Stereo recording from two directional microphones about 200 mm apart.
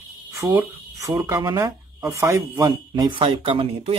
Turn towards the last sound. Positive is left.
turn(degrees=-25)  # may be behind; listen again after turning